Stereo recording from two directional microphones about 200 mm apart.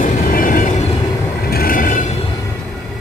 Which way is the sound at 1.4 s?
50° left (ahead or behind).